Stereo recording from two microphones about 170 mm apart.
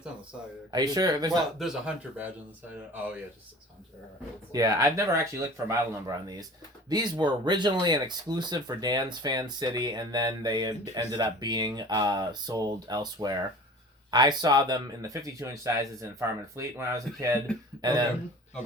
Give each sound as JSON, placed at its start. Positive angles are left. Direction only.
{"t": 0.7, "sound": "speech", "side_deg": -25}
{"t": 1.5, "sound": "speech", "side_deg": -5}
{"t": 4.5, "sound": "speech", "side_deg": -20}